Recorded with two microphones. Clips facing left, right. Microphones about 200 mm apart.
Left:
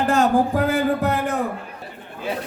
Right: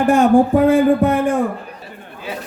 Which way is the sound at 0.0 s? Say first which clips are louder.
Right 5 dB; 15° right (ahead or behind).